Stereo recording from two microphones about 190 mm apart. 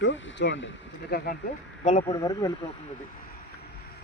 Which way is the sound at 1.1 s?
55° left (ahead or behind).